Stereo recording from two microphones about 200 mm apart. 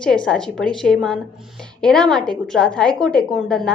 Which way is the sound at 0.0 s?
5° left (ahead or behind).